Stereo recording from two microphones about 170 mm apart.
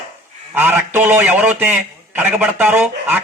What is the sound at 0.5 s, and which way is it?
A man's voice, 10° right (ahead or behind).